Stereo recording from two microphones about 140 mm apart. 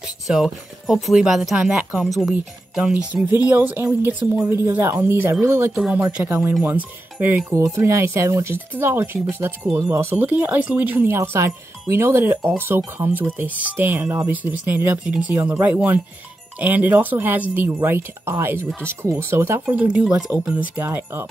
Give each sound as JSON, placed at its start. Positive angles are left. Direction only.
{"t": 0.0, "sound": "speech", "side_deg": -5}
{"t": 5.8, "sound": "speech", "side_deg": -5}
{"t": 6.2, "sound": "speech", "side_deg": -15}